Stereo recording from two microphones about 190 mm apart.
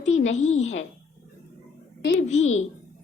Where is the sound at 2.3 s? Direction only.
35° left (ahead or behind).